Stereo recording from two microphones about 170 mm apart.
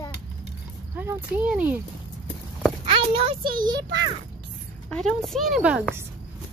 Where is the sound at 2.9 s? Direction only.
35° right (ahead or behind).